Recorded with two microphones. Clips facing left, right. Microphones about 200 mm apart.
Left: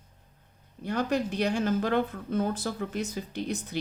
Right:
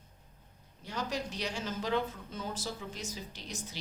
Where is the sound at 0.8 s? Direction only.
55° left (ahead or behind).